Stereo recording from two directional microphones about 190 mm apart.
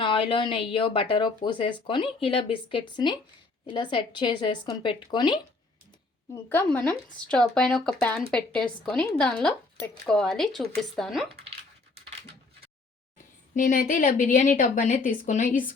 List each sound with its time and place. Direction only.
0.0 s speech: 25° left (ahead or behind)
6.5 s speech: 10° left (ahead or behind)
13.5 s a woman's voice: 40° left (ahead or behind)